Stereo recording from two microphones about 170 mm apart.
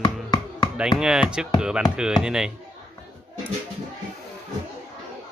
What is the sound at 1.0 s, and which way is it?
Speech, 5° right (ahead or behind).